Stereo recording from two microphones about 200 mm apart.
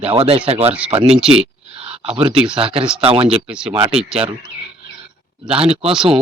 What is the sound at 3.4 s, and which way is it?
Speech, 5° right (ahead or behind).